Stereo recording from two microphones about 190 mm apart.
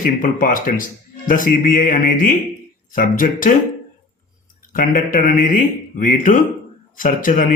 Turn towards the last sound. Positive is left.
turn(degrees=45)  # may be behind; listen again after turning